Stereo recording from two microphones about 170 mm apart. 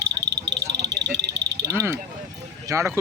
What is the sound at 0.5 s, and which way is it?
Cricket, 85° right.